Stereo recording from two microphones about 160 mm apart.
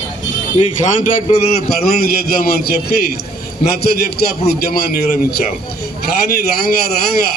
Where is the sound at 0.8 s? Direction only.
55° left (ahead or behind); by 4.0 s 80° left.